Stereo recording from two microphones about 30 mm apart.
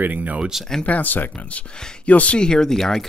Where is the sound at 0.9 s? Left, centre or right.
Left.